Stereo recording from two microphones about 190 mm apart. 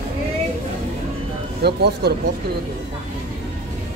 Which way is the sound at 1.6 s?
60° right (ahead or behind).